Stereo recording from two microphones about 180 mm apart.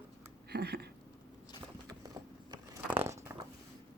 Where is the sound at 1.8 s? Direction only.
20° right (ahead or behind).